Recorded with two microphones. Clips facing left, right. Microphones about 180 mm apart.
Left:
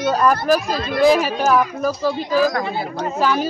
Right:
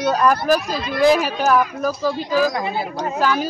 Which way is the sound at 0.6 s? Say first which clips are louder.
Left 2 dB; 50° left (ahead or behind).